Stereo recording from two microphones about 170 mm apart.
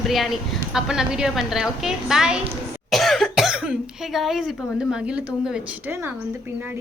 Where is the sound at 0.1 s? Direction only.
Centre (ahead or behind).